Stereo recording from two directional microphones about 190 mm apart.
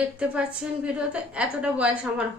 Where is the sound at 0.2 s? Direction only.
5° right (ahead or behind).